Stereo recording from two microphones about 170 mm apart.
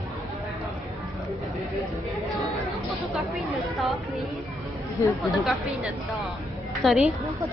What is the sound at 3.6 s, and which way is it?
Chatter, centre (ahead or behind).